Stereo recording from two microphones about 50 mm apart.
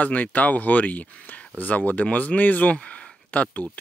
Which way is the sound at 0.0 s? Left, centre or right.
Left.